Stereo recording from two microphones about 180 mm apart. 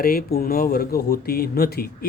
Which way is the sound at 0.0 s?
55° left (ahead or behind).